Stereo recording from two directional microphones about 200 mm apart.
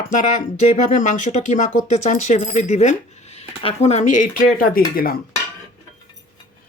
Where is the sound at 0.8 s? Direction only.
40° left (ahead or behind).